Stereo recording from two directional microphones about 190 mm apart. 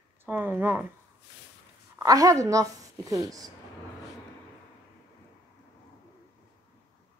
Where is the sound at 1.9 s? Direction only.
20° right (ahead or behind).